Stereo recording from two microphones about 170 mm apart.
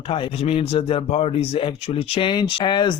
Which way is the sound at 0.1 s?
35° left (ahead or behind).